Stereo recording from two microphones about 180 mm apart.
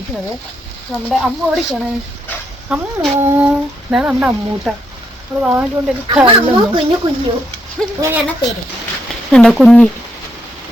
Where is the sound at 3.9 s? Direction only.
10° right (ahead or behind).